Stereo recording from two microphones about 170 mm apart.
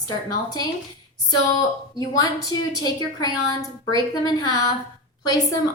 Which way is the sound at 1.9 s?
20° left (ahead or behind).